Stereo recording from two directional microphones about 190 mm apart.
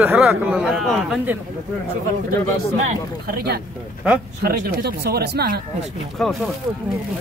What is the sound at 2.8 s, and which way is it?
Speech, 55° right (ahead or behind).